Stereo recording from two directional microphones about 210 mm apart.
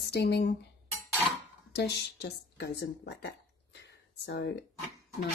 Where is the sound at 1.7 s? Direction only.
50° left (ahead or behind).